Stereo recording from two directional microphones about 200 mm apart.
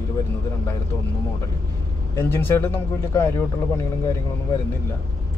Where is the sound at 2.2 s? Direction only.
10° left (ahead or behind).